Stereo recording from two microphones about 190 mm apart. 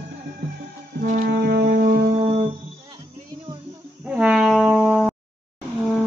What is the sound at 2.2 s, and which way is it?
Music, 30° right (ahead or behind).